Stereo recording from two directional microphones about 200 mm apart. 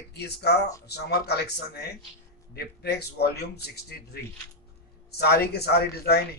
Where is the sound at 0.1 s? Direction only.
55° left (ahead or behind).